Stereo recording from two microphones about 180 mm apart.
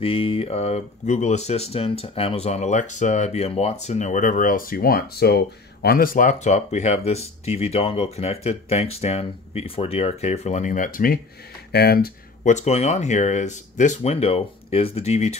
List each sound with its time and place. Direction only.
0.0 s speech: 30° left (ahead or behind); by 12.5 s 60° left (ahead or behind)
12.5 s speech: 35° left (ahead or behind)